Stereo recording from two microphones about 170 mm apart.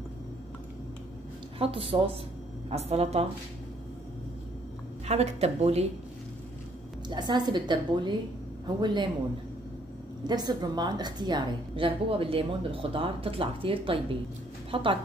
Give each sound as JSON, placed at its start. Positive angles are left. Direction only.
{"t": 1.6, "sound": "speech", "side_deg": -30}
{"t": 5.0, "sound": "speech", "side_deg": -40}
{"t": 7.1, "sound": "a woman's voice", "side_deg": -25}
{"t": 10.2, "sound": "a woman's voice", "side_deg": -25}